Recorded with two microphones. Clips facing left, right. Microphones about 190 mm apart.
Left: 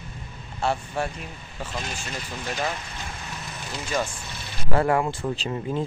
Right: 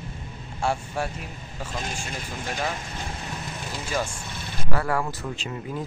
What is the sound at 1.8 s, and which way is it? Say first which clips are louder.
Speech: right 2 dB; 45° right (ahead or behind).